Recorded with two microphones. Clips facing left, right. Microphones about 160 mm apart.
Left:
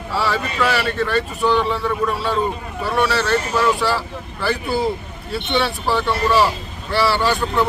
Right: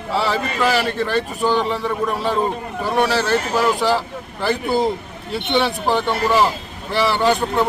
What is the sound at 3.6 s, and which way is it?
Speech, 20° right (ahead or behind).